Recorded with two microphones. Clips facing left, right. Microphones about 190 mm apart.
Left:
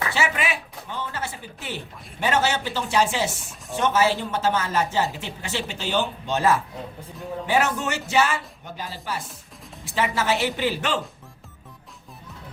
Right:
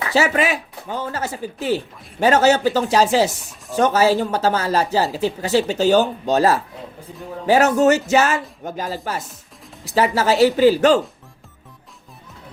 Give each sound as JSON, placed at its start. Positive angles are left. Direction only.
{"t": 0.1, "sound": "speech", "side_deg": -40}